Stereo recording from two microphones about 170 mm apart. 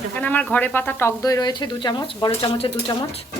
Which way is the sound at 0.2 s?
10° left (ahead or behind).